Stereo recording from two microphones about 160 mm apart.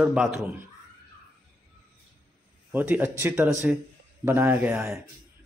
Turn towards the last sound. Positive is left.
turn(degrees=-15)  # may be behind; listen again after turning